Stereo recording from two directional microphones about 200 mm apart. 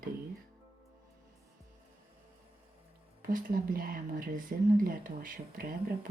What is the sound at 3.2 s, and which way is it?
Speech, 40° right (ahead or behind).